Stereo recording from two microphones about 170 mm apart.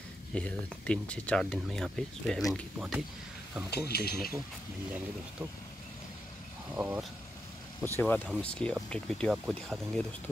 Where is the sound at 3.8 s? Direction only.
70° left (ahead or behind).